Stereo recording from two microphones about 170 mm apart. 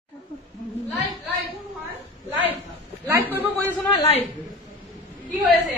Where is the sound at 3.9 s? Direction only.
35° left (ahead or behind).